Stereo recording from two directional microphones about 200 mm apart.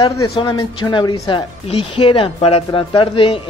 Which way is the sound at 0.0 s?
25° left (ahead or behind).